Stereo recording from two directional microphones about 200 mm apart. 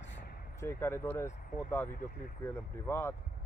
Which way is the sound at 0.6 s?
10° left (ahead or behind).